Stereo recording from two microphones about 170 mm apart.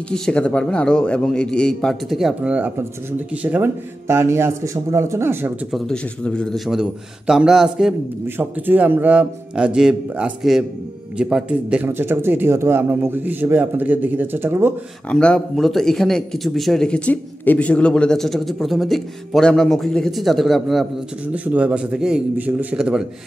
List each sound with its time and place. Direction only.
0.1 s speech: 5° left (ahead or behind); by 5.5 s 15° right (ahead or behind)
5.7 s speech: centre (ahead or behind)
15.0 s speech: 5° left (ahead or behind)